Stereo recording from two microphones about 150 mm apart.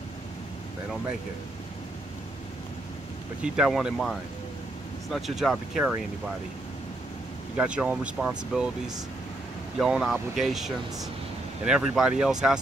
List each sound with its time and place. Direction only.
3.4 s speech: 5° right (ahead or behind)
7.5 s speech: 5° right (ahead or behind)